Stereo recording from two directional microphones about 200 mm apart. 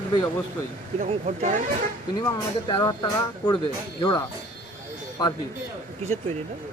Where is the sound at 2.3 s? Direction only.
20° left (ahead or behind).